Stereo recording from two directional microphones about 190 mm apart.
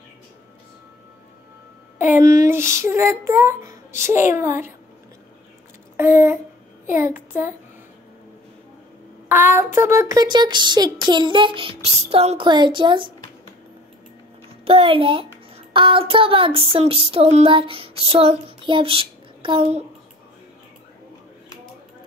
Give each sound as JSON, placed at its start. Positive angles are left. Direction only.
{"t": 2.2, "sound": "child singing", "side_deg": -15}
{"t": 5.9, "sound": "child singing", "side_deg": -10}
{"t": 9.6, "sound": "speech", "side_deg": -15}
{"t": 14.6, "sound": "speech", "side_deg": -30}